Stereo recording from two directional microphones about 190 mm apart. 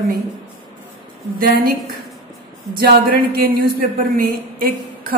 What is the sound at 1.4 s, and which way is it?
Speech, 50° right (ahead or behind).